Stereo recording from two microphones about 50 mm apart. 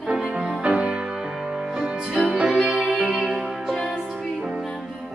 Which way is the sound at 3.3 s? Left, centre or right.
Centre.